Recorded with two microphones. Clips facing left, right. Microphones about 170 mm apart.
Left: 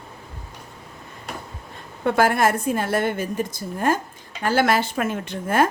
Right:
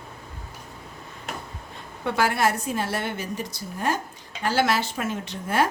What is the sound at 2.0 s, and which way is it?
A woman's voice, 50° left (ahead or behind).